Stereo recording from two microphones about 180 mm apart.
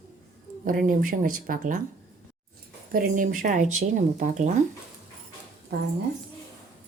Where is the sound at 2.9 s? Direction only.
50° right (ahead or behind).